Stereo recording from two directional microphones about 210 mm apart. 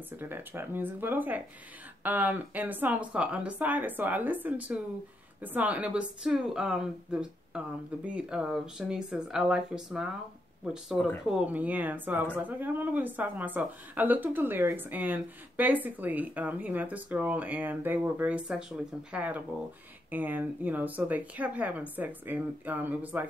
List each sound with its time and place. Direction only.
0.2 s a woman's voice: 10° right (ahead or behind)